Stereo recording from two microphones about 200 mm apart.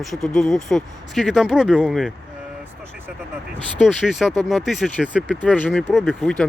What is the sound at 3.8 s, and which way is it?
Speech, centre (ahead or behind).